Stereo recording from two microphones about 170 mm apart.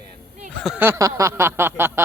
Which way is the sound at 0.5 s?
Centre (ahead or behind).